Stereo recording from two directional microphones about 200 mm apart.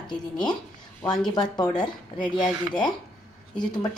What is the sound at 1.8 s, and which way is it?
Speech, 20° left (ahead or behind).